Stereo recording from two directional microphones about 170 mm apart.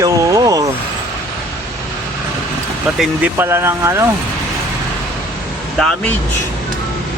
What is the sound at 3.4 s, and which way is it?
Speech, 15° right (ahead or behind).